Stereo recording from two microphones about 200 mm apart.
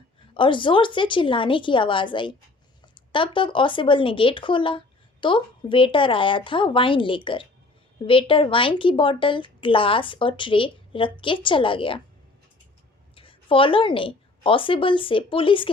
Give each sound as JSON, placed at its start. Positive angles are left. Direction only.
{"t": 0.3, "sound": "a woman's voice", "side_deg": 25}
{"t": 13.1, "sound": "a woman's voice", "side_deg": 25}